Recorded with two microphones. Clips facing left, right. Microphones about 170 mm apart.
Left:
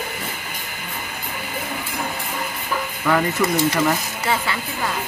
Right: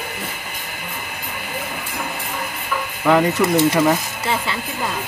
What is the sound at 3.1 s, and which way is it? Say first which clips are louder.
Speech: right 4 dB; 20° right (ahead or behind).